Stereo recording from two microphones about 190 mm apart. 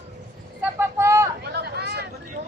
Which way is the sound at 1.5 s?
60° right (ahead or behind).